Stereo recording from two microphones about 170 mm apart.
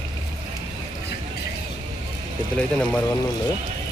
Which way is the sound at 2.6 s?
5° left (ahead or behind).